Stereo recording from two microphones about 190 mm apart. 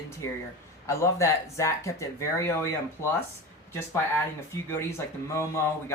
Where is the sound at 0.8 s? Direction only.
15° left (ahead or behind).